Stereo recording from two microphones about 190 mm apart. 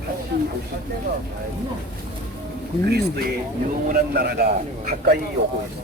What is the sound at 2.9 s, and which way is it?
A man's voice, 50° right (ahead or behind).